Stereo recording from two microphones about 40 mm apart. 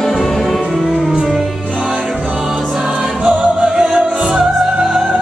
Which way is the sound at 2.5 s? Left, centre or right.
Centre.